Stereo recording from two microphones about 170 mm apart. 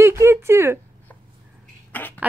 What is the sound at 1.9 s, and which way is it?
Speech, 10° left (ahead or behind).